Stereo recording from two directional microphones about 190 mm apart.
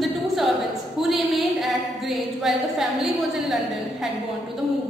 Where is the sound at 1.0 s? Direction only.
Centre (ahead or behind).